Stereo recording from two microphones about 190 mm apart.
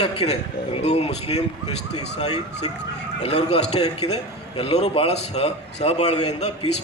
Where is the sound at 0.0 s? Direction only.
35° left (ahead or behind).